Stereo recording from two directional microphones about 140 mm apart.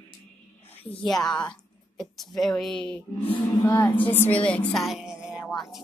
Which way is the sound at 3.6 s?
25° left (ahead or behind).